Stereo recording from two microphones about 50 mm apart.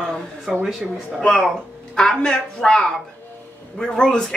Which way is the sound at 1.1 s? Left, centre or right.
Centre.